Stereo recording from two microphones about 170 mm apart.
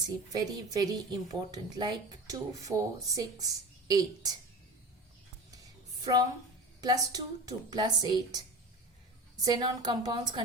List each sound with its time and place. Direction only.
0.3 s a woman's voice: 20° right (ahead or behind)
6.1 s a woman's voice: 30° right (ahead or behind)